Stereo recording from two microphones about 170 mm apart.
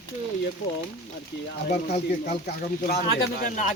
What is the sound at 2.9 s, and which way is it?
Speech, 65° left (ahead or behind).